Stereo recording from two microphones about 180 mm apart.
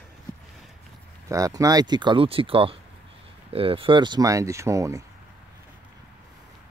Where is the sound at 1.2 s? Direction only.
20° right (ahead or behind).